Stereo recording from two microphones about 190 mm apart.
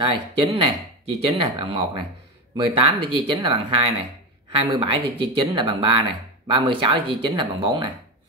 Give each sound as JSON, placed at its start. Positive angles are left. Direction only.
{"t": 0.0, "sound": "speech", "side_deg": -25}